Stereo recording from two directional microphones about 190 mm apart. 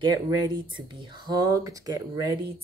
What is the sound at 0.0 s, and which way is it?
Speech, 20° right (ahead or behind).